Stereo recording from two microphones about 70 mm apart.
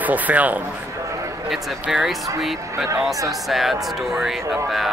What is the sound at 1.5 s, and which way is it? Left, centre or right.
Speech, centre.